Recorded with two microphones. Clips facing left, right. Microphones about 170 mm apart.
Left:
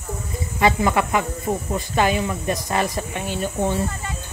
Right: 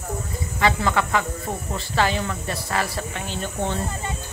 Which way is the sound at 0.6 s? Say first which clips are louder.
Left 3 dB; 20° left (ahead or behind).